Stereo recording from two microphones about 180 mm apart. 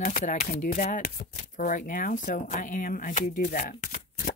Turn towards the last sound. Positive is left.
turn(degrees=45)  # may be behind; listen again after turning